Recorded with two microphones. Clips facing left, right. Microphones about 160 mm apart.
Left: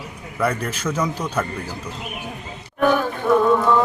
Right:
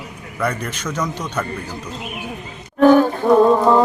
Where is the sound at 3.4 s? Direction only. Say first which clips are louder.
Right 5 dB; 35° right (ahead or behind).